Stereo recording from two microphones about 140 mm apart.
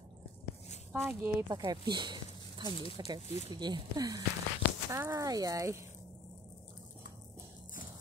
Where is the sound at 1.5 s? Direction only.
35° right (ahead or behind).